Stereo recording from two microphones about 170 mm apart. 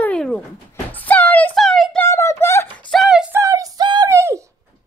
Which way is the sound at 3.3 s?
20° right (ahead or behind).